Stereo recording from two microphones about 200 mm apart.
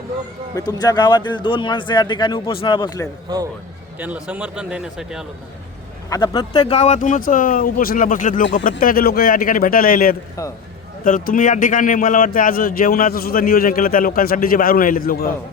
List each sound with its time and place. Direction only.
0.5 s a man's voice: 20° left (ahead or behind)
4.0 s a man's voice: 5° right (ahead or behind)
6.1 s a man's voice: 15° left (ahead or behind); by 15.3 s 50° left (ahead or behind)